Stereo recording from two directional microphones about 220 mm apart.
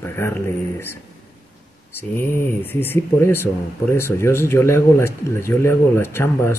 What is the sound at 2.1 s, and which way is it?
Speech, 10° left (ahead or behind).